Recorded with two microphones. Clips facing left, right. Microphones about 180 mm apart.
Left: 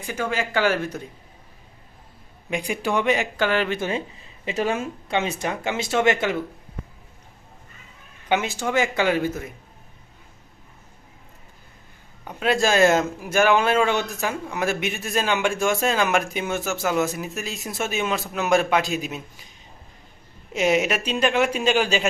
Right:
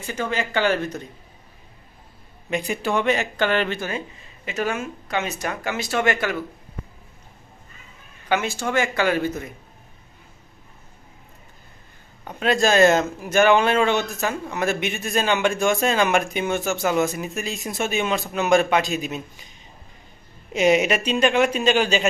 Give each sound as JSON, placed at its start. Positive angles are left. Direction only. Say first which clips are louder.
{"t": 0.0, "sound": "a man's voice", "louder": "even", "side_deg": 10}
{"t": 2.5, "sound": "a man's voice", "louder": "right 1 dB", "side_deg": 10}
{"t": 3.8, "sound": "speech", "louder": "left 3 dB", "side_deg": 25}
{"t": 8.3, "sound": "a man's voice", "louder": "even", "side_deg": 15}
{"t": 12.3, "sound": "speech", "louder": "right 1 dB", "side_deg": 5}
{"t": 20.5, "sound": "speech", "louder": "right 3 dB", "side_deg": 0}